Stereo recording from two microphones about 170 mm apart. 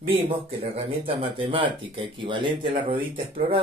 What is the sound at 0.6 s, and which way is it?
Speech, 35° right (ahead or behind).